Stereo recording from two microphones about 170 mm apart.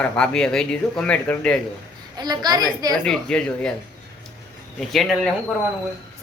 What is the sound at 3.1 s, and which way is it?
Speech, 5° left (ahead or behind).